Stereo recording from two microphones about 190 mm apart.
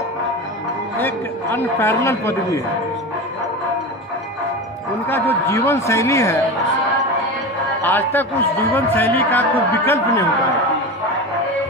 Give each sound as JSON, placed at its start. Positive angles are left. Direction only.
{"t": 0.9, "sound": "a man's voice", "side_deg": 10}
{"t": 5.5, "sound": "a man's voice", "side_deg": 15}
{"t": 7.8, "sound": "a man's voice", "side_deg": 10}